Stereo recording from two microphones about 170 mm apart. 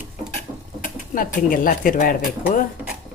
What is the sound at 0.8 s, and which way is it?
Speech, 50° left (ahead or behind).